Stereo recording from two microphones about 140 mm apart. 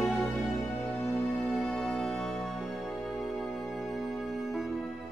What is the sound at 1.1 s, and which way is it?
Music, 5° left (ahead or behind).